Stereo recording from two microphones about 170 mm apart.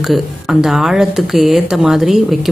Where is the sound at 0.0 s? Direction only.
Centre (ahead or behind).